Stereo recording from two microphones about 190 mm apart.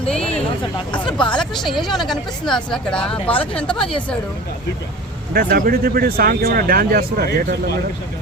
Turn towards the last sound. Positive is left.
turn(degrees=-55)  # may be behind; listen again after turning